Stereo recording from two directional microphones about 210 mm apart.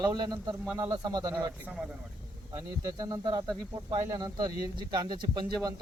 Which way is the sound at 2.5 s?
15° right (ahead or behind).